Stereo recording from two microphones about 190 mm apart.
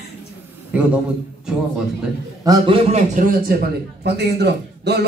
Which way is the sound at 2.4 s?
25° right (ahead or behind).